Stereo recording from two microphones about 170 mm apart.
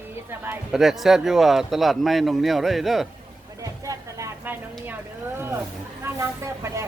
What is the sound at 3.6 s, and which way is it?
Music, 20° right (ahead or behind).